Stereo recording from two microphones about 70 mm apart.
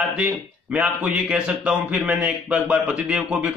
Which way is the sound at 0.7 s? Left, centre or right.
Centre.